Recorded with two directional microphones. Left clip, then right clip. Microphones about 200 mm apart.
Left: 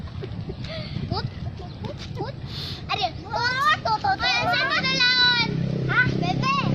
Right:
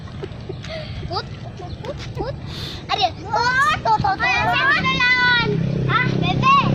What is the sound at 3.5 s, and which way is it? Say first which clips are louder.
Children playing: right 3 dB; 15° left (ahead or behind).